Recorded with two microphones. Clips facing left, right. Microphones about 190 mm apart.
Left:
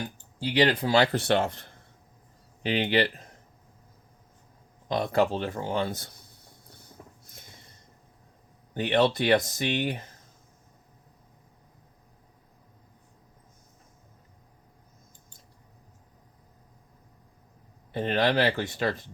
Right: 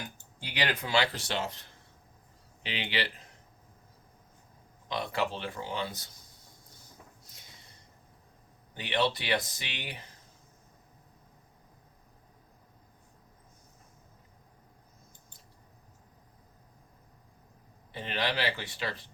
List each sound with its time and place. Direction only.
0.0 s speech: 30° left (ahead or behind)
1.2 s speech: 55° left (ahead or behind)
4.9 s speech: 45° left (ahead or behind)
6.8 s a sound: 50° left (ahead or behind)
8.7 s speech: 50° left (ahead or behind)
17.9 s speech: 50° left (ahead or behind)